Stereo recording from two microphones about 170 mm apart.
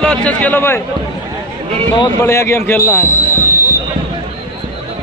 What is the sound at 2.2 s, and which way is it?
Speech, 15° left (ahead or behind).